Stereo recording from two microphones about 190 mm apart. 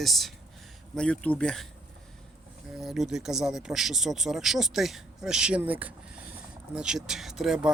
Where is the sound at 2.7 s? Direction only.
Centre (ahead or behind).